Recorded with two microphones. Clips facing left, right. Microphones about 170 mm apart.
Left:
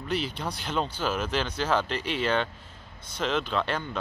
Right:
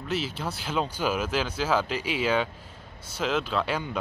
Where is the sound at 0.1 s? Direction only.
5° right (ahead or behind).